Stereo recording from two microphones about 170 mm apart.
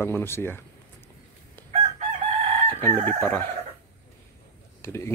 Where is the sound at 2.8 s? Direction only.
10° left (ahead or behind).